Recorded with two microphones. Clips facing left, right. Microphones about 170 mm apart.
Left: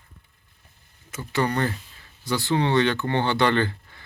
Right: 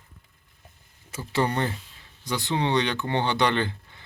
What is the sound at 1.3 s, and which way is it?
Speech, 25° right (ahead or behind).